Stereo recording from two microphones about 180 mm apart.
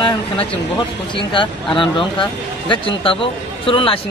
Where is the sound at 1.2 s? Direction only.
25° left (ahead or behind).